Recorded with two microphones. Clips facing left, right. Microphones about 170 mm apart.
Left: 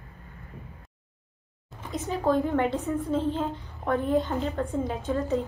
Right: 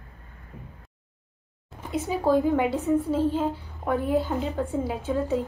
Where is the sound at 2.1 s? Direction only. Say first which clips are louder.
Right 2 dB; 5° right (ahead or behind).